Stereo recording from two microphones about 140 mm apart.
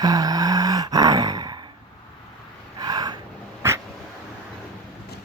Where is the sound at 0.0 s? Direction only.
25° right (ahead or behind).